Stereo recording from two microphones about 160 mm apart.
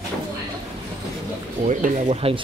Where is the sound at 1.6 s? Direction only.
45° right (ahead or behind).